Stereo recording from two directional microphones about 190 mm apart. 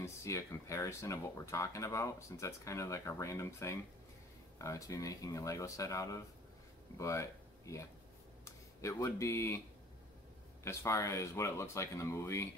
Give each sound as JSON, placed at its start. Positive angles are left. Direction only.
{"t": 0.0, "sound": "speech", "side_deg": 15}
{"t": 10.6, "sound": "speech", "side_deg": 15}